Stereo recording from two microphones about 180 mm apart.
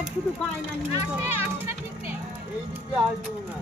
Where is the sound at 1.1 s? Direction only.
10° right (ahead or behind).